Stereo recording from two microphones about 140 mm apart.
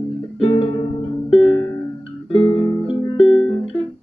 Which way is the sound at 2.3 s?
35° left (ahead or behind).